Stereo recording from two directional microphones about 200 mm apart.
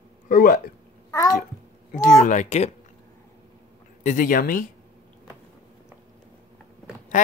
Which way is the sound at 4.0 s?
40° left (ahead or behind).